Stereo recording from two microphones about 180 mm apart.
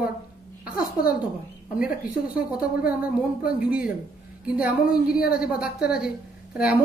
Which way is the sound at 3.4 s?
55° left (ahead or behind).